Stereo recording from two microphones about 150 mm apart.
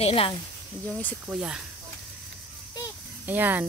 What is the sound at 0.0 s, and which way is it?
Speech, 40° left (ahead or behind).